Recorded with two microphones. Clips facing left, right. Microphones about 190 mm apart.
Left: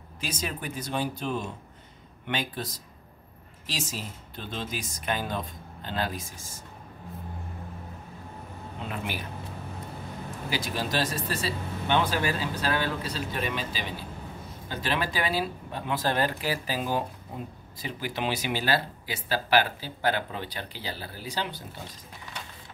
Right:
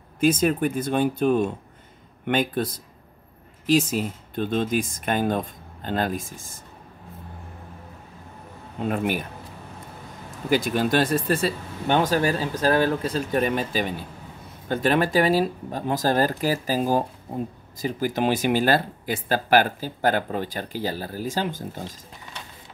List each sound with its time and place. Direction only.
0.2 s speech: 50° right (ahead or behind)
8.7 s speech: 50° right (ahead or behind)
10.5 s speech: 55° right (ahead or behind)